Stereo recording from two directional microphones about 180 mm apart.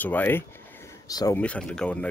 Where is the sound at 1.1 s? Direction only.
20° left (ahead or behind).